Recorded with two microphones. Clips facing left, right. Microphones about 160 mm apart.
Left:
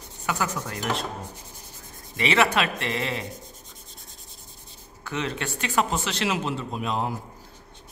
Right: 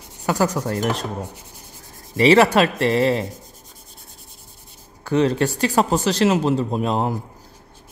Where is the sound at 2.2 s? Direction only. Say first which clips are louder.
Right 9 dB; 35° right (ahead or behind).